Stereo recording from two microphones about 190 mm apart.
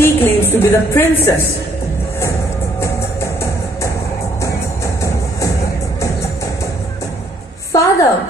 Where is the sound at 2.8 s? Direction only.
15° left (ahead or behind).